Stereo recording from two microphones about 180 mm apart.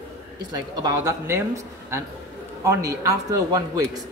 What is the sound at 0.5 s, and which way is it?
Speech, 20° right (ahead or behind).